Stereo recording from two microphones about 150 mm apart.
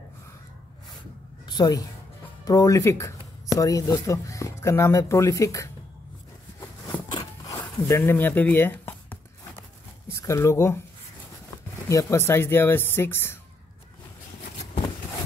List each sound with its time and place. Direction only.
1.4 s a woman's voice: 25° left (ahead or behind)
7.1 s a sound: 25° left (ahead or behind)
7.9 s speech: 15° left (ahead or behind)
11.9 s speech: 20° left (ahead or behind)